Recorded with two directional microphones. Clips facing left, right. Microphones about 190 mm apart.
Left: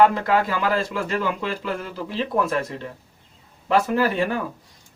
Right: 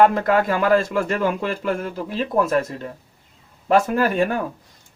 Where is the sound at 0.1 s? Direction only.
50° right (ahead or behind).